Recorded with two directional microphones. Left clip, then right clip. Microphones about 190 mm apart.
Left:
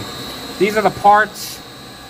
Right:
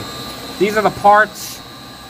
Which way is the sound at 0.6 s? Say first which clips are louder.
Even; 5° left (ahead or behind).